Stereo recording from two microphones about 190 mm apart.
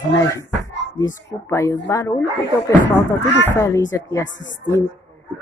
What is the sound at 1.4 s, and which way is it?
Speech, 15° left (ahead or behind).